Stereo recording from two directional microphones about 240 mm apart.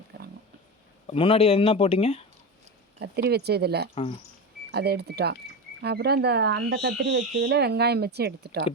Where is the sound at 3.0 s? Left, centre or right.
Right.